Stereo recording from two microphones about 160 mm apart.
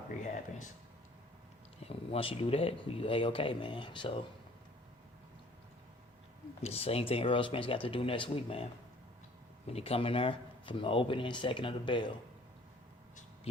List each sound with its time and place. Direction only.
1.8 s speech: 35° left (ahead or behind)
6.6 s speech: 40° left (ahead or behind)